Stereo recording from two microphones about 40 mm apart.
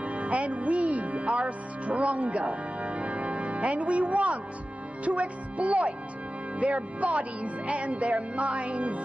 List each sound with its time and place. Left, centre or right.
0.0 s speech: right